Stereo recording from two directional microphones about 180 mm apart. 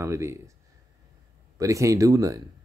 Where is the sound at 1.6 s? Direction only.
20° right (ahead or behind).